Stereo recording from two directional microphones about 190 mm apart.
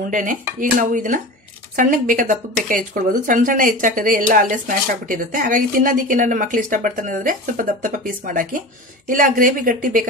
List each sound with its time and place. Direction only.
0.1 s a woman's voice: 45° right (ahead or behind)